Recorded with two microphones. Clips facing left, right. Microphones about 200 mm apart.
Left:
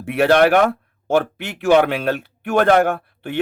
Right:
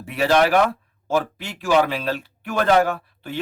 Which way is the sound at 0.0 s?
60° left (ahead or behind).